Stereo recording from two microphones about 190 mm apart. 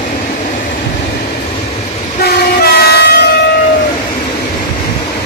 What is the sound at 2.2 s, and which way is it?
Train, 55° left (ahead or behind).